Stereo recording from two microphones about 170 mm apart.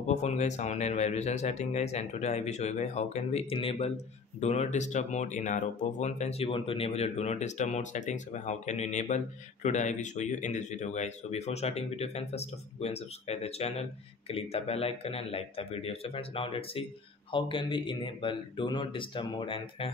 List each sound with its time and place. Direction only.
0.0 s a man's voice: 40° left (ahead or behind)